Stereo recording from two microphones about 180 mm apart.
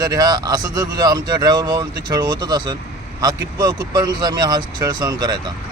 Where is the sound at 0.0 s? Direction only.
20° right (ahead or behind).